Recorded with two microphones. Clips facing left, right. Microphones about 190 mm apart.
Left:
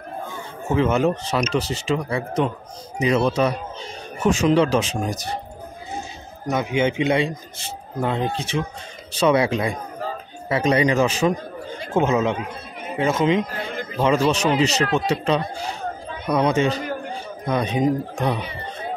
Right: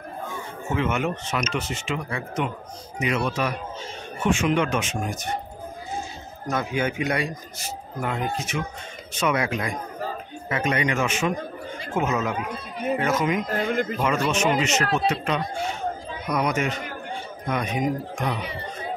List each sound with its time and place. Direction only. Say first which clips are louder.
0.7 s speech: left 6 dB; 35° left (ahead or behind)
6.5 s a man's voice: left 5 dB; 20° left (ahead or behind)